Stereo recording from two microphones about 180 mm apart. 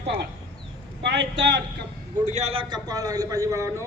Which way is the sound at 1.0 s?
75° right (ahead or behind).